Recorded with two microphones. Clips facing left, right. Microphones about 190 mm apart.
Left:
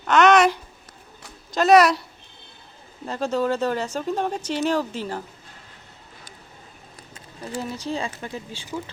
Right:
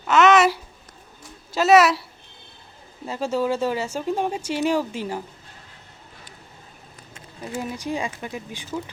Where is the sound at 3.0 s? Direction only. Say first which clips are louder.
Even; 10° right (ahead or behind).